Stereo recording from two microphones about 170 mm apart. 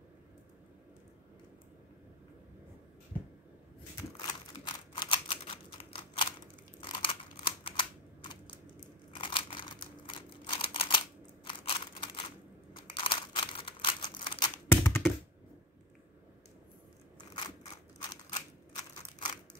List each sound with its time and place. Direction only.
3.9 s typewriter: 25° left (ahead or behind)
6.8 s computer keyboard: 30° left (ahead or behind)
9.1 s crumpling: 30° left (ahead or behind)
11.4 s a sound: 30° left (ahead or behind)
12.7 s crumpling: 30° left (ahead or behind)
14.7 s computer keyboard: 15° left (ahead or behind)
19.0 s a sound: 30° left (ahead or behind)